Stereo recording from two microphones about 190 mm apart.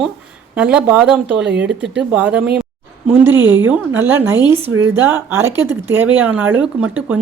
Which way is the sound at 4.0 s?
10° right (ahead or behind).